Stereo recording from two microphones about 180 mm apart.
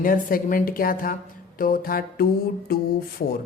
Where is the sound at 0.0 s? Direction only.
50° left (ahead or behind).